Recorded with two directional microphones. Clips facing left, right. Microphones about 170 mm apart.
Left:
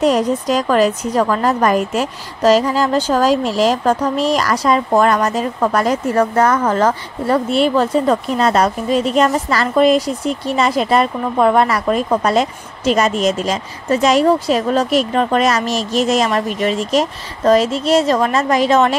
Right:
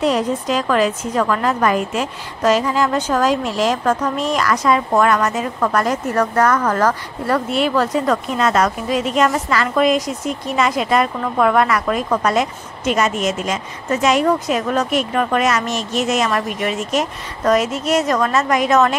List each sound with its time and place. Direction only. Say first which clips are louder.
0.0 s a woman's voice: left 3 dB; 40° left (ahead or behind)